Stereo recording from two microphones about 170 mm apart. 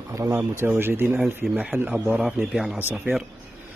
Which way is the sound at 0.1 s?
15° right (ahead or behind).